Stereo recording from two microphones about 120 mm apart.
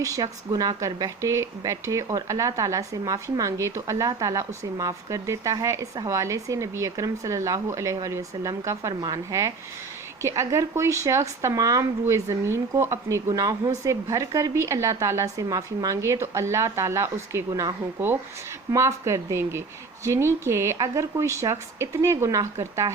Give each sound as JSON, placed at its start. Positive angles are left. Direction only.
{"t": 0.0, "sound": "speech", "side_deg": -30}
{"t": 17.5, "sound": "speech", "side_deg": -35}